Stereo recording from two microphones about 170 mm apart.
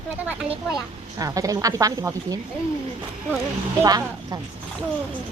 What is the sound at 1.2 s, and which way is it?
A woman's voice, 20° right (ahead or behind).